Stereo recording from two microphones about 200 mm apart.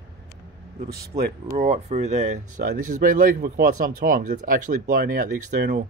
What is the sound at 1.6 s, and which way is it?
Speech, 35° right (ahead or behind).